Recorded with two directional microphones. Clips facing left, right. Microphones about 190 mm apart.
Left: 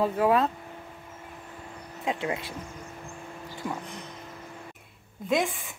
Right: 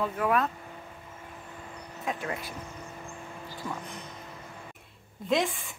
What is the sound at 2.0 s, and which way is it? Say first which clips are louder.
Speech: left 4 dB; 20° left (ahead or behind).